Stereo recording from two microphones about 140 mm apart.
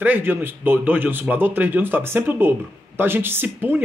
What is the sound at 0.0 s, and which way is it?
Speech, 15° right (ahead or behind).